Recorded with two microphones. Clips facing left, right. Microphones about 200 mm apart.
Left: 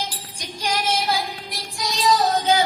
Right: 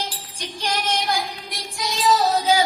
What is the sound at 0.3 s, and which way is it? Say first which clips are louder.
Music: left 1 dB; 10° left (ahead or behind).